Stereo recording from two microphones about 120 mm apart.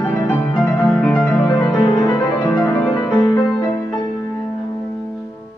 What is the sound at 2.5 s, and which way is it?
Music, 10° left (ahead or behind).